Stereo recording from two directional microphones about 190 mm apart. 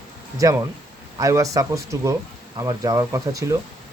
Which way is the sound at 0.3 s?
15° right (ahead or behind).